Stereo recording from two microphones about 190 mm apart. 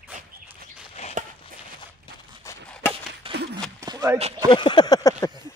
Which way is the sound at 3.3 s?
60° right (ahead or behind).